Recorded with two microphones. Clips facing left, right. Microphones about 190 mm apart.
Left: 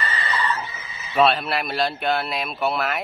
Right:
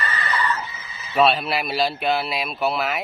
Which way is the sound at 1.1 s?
Centre (ahead or behind).